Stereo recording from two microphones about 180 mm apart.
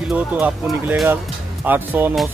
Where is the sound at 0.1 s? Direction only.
10° right (ahead or behind).